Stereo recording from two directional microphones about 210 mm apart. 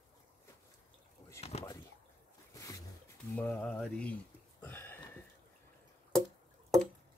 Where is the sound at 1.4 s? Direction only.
30° left (ahead or behind).